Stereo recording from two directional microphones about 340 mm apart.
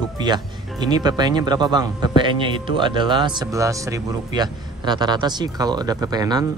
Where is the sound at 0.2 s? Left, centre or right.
Centre.